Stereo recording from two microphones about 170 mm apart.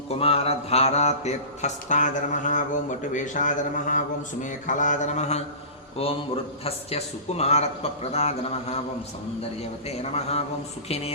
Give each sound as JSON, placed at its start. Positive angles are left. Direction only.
{"t": 0.1, "sound": "mantra", "side_deg": 35}
{"t": 3.1, "sound": "a man's voice", "side_deg": 50}
{"t": 6.0, "sound": "mantra", "side_deg": 35}